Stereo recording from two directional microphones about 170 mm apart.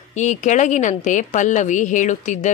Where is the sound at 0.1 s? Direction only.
45° left (ahead or behind).